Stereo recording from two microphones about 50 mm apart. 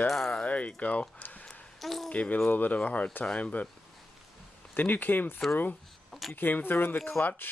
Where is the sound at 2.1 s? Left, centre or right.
Left.